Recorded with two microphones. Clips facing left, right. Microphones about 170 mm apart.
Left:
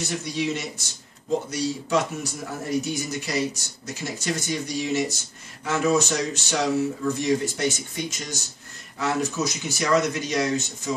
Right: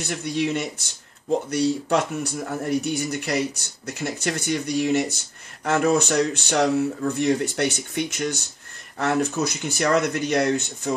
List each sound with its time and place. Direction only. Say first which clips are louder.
0.2 s speech: right 3 dB; 55° right (ahead or behind)